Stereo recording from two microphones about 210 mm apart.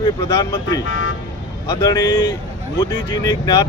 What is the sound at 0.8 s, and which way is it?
Speech, 65° left (ahead or behind).